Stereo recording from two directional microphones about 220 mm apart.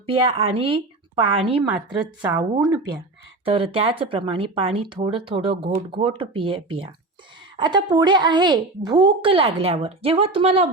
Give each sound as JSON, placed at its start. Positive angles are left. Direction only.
{"t": 0.0, "sound": "speech", "side_deg": -25}
{"t": 2.3, "sound": "speech", "side_deg": -15}
{"t": 3.4, "sound": "speech", "side_deg": -25}